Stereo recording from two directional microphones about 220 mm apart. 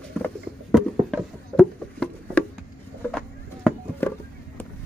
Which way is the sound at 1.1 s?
5° left (ahead or behind).